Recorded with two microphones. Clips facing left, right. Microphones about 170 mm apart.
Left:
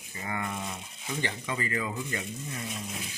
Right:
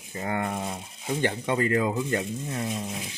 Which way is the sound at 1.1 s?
55° right (ahead or behind).